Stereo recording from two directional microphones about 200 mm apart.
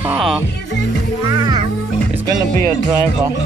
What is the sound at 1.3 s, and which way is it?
Music, 20° right (ahead or behind).